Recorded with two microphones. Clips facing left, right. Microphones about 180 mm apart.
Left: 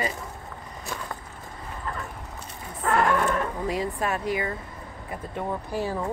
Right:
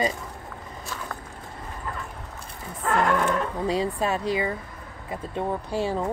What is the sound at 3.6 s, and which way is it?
Speech, 30° right (ahead or behind).